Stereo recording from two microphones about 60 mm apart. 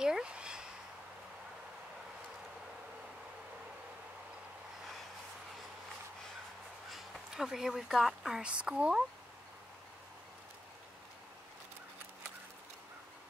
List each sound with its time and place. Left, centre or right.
0.0 s a sound: centre
6.9 s speech: centre
8.4 s speech: centre